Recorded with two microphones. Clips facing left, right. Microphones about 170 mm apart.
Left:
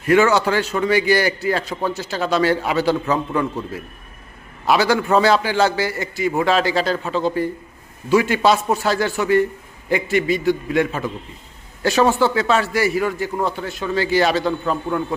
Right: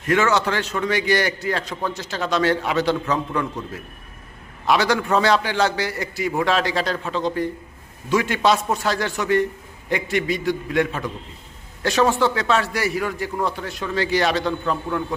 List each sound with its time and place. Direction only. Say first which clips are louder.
0.0 s a man's voice: left 4 dB; 10° left (ahead or behind)
4.6 s a man's voice: left 2 dB; 5° left (ahead or behind)